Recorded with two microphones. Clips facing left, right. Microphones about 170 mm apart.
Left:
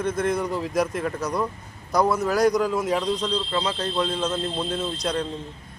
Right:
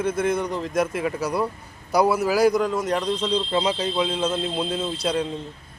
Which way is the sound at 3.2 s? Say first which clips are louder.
Right 3 dB; 15° right (ahead or behind).